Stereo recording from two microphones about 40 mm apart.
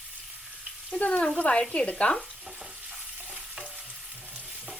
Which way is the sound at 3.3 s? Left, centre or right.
Right.